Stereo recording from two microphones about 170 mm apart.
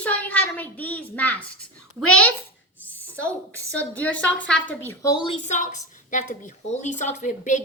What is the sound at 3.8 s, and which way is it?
A child's voice, 10° left (ahead or behind).